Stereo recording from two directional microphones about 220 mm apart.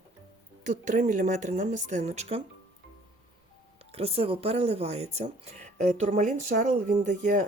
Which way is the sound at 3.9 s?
30° right (ahead or behind).